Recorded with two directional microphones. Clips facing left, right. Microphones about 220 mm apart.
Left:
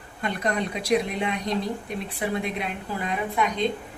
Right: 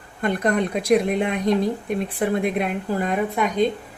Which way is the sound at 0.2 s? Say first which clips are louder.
Right 6 dB; 50° right (ahead or behind).